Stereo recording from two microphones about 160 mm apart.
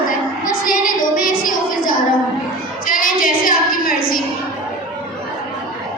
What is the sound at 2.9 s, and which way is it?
Child singing, 60° left (ahead or behind).